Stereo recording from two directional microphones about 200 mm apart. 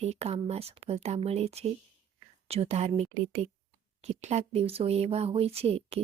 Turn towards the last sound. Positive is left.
turn(degrees=-30)  # may be behind; listen again after turning